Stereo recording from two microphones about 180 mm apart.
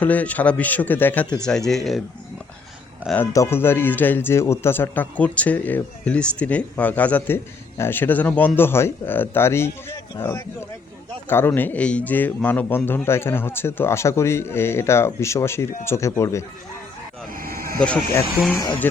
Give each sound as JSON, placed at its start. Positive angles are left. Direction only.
{"t": 0.0, "sound": "speech", "side_deg": 10}
{"t": 3.0, "sound": "speech", "side_deg": -5}
{"t": 3.3, "sound": "speech", "side_deg": 15}
{"t": 17.3, "sound": "a sound", "side_deg": -55}
{"t": 17.7, "sound": "speech", "side_deg": 5}
{"t": 18.5, "sound": "speech", "side_deg": 20}